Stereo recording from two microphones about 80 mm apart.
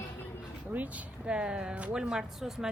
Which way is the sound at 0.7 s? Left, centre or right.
Centre.